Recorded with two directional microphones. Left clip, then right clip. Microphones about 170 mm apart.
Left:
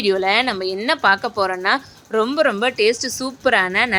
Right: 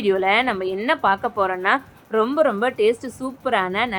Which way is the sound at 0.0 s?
20° left (ahead or behind).